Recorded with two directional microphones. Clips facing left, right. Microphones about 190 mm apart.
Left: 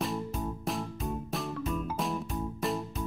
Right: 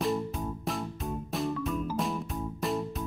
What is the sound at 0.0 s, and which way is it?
Music, centre (ahead or behind).